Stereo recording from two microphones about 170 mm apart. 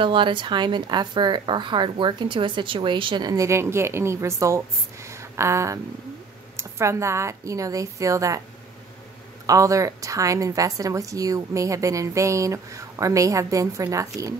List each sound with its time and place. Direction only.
0.0 s a woman's voice: 30° right (ahead or behind)
9.5 s a woman's voice: 20° right (ahead or behind)